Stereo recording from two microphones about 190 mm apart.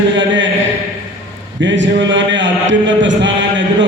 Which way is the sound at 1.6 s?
70° right (ahead or behind).